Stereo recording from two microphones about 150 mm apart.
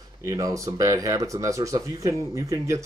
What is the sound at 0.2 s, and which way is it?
Speech, 20° right (ahead or behind).